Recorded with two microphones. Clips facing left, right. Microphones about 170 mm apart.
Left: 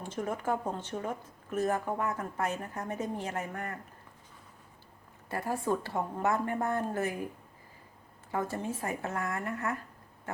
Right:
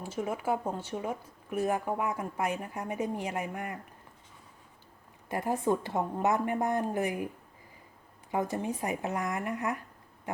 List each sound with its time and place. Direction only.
0.0 s speech: 10° right (ahead or behind)
5.3 s speech: 20° right (ahead or behind)
8.3 s speech: 15° right (ahead or behind)